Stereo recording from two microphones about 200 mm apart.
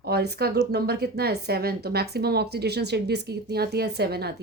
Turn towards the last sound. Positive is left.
turn(degrees=-55)  # may be behind; listen again after turning